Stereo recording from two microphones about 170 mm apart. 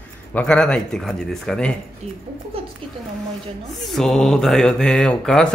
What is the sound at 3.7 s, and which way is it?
Speech, centre (ahead or behind).